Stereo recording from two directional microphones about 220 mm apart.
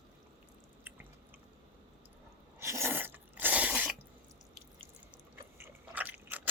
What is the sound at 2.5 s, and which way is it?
Sneeze, 10° right (ahead or behind).